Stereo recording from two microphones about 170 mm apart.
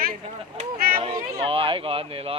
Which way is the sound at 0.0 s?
60° right (ahead or behind).